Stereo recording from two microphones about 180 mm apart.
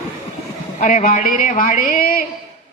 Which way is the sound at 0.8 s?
45° left (ahead or behind).